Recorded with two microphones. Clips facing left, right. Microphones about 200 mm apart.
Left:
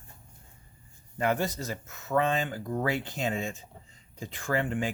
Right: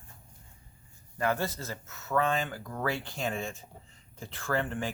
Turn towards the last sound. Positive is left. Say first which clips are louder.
# left 2 dB
turn(degrees=15)  # may be behind; listen again after turning